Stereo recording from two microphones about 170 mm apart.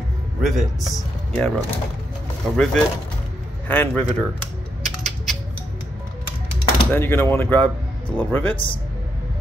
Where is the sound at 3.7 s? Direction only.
10° left (ahead or behind).